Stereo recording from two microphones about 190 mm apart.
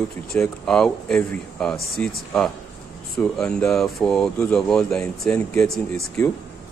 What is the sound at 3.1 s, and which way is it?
Speech, 5° left (ahead or behind).